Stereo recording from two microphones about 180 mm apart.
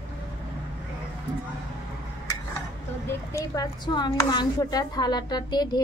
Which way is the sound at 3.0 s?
15° left (ahead or behind).